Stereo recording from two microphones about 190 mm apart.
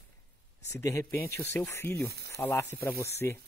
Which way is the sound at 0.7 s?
15° left (ahead or behind).